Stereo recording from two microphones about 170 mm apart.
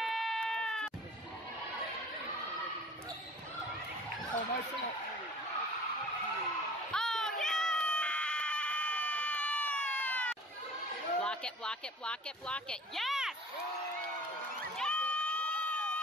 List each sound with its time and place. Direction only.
0.0 s bleat: centre (ahead or behind)
6.9 s a sound: 5° left (ahead or behind)
11.1 s speech: 5° left (ahead or behind)
14.8 s crowd: 5° left (ahead or behind)